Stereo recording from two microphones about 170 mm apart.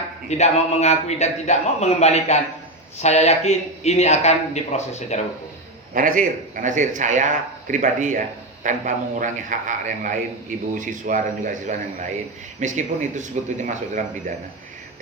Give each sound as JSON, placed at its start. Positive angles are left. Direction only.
{"t": 0.3, "sound": "speech", "side_deg": 40}
{"t": 5.9, "sound": "speech", "side_deg": -50}